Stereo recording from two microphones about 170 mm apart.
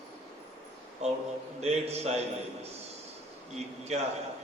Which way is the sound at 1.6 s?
40° right (ahead or behind).